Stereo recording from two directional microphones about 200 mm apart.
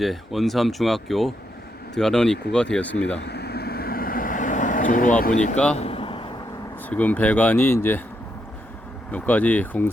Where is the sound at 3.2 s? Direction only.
55° left (ahead or behind); by 8.1 s 10° left (ahead or behind).